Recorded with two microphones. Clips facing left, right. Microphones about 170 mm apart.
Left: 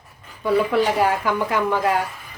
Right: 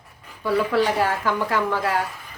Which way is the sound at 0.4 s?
20° left (ahead or behind).